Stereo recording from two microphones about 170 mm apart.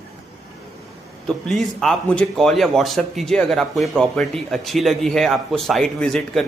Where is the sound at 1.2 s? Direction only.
Centre (ahead or behind).